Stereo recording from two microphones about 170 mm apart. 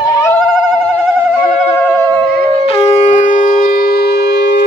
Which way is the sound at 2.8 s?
40° left (ahead or behind).